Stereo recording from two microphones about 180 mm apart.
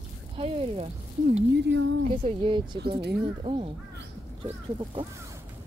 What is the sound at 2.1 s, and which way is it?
Speech, 30° right (ahead or behind).